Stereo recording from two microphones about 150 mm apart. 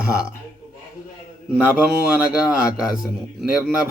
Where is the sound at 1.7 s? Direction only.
10° right (ahead or behind).